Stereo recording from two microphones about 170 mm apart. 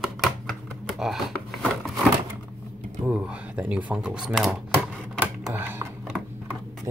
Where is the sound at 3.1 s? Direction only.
10° right (ahead or behind).